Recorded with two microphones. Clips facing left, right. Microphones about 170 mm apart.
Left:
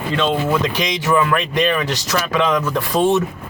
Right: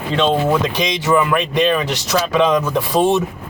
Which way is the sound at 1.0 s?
15° right (ahead or behind).